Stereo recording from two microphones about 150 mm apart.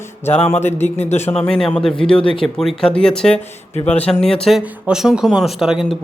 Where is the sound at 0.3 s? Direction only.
45° left (ahead or behind).